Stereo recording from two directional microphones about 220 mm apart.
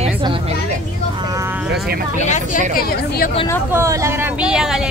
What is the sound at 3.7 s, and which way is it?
Speech, 15° right (ahead or behind).